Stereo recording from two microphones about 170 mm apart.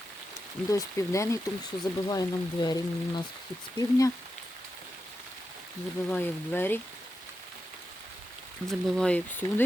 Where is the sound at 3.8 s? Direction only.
20° left (ahead or behind).